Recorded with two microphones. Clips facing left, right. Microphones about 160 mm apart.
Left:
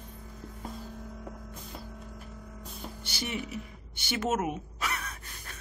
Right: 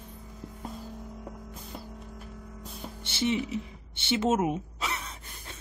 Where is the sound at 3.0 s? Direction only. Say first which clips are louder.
Right 8 dB; 25° right (ahead or behind).